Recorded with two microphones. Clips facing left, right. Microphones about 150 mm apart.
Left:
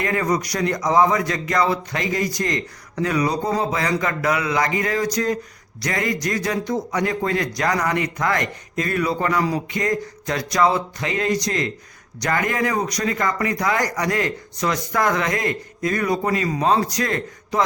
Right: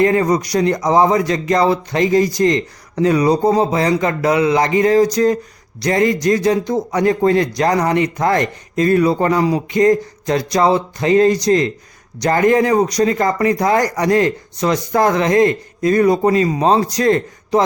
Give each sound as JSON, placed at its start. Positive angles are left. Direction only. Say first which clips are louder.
{"t": 0.0, "sound": "speech", "louder": "right 8 dB", "side_deg": -30}